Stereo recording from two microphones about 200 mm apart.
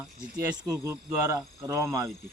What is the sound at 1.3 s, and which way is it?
Speech, 15° right (ahead or behind).